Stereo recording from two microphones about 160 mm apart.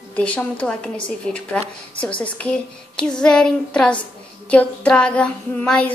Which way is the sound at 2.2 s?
5° left (ahead or behind).